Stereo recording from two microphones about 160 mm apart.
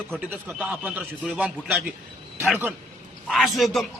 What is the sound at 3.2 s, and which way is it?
Speech, centre (ahead or behind).